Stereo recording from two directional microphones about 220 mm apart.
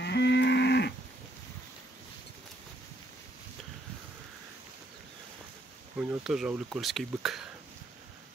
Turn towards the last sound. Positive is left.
turn(degrees=0)  # may be behind; listen again after turning